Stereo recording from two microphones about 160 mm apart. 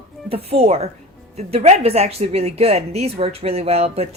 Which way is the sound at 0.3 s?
40° right (ahead or behind).